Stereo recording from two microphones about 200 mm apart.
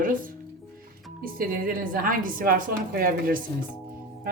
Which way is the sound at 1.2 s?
45° right (ahead or behind).